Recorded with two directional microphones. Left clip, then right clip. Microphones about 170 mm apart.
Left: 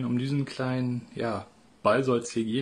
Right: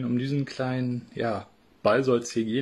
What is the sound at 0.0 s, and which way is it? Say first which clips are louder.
Speech: right 1 dB; 5° right (ahead or behind).